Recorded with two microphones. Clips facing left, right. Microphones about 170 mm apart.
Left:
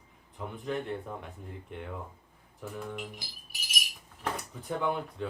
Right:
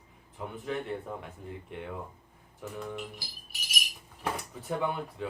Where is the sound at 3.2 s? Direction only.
20° left (ahead or behind).